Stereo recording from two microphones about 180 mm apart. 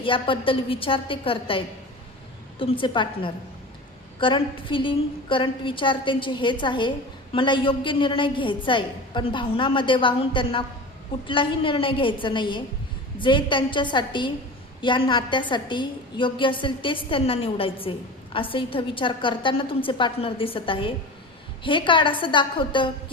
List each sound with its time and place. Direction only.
0.0 s a woman's voice: 30° left (ahead or behind)